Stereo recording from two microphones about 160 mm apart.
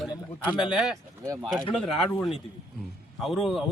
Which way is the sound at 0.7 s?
5° right (ahead or behind).